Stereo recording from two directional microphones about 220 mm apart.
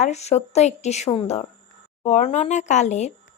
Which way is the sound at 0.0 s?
30° left (ahead or behind).